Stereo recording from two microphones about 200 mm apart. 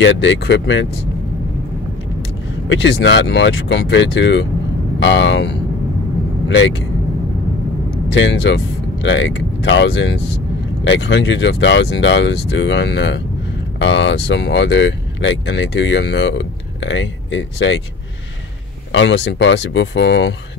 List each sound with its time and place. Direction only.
0.0 s speech: 65° left (ahead or behind)
2.7 s speech: 65° left (ahead or behind)
8.1 s speech: 65° left (ahead or behind)
18.9 s speech: 65° left (ahead or behind)